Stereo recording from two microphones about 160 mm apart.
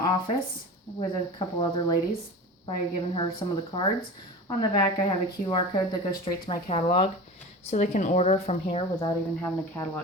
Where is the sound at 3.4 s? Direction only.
30° left (ahead or behind).